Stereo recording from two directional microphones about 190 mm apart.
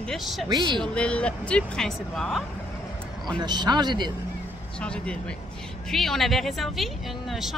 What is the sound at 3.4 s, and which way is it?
Speech, 20° right (ahead or behind).